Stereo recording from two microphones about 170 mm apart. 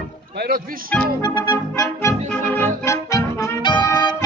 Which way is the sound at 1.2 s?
25° left (ahead or behind).